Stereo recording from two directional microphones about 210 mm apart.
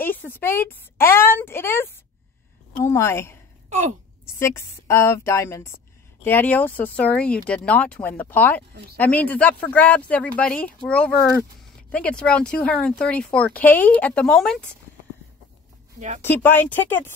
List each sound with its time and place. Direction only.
0.0 s speech: 10° left (ahead or behind)
4.4 s speech: 15° left (ahead or behind)
16.2 s speech: 10° left (ahead or behind)